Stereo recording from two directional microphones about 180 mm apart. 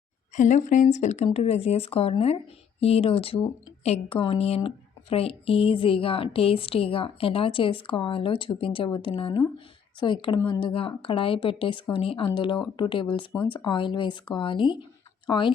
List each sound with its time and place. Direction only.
0.3 s speech: 40° left (ahead or behind); by 15.5 s 25° left (ahead or behind)